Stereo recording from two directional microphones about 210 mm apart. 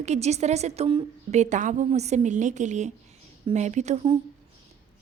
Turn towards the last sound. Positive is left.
turn(degrees=-25)  # may be behind; listen again after turning